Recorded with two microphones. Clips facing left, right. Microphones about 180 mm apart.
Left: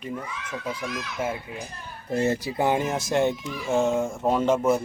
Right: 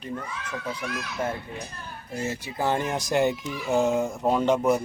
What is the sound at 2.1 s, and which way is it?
Speech, 65° left (ahead or behind).